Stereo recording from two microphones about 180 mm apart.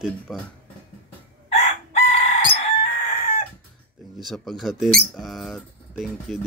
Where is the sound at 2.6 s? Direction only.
40° left (ahead or behind).